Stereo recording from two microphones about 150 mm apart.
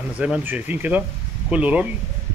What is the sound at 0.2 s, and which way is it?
Speech, 10° right (ahead or behind).